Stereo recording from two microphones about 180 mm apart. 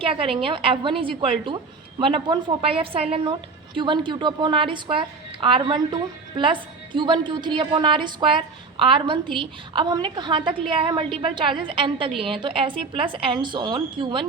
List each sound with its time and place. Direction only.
0.0 s a woman's voice: 30° right (ahead or behind)